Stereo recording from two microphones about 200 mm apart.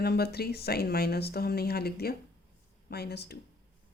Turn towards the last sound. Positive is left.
turn(degrees=55)  # may be behind; listen again after turning